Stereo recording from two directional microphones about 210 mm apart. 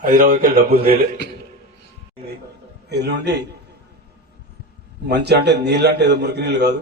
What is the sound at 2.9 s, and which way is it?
Speech, 50° right (ahead or behind).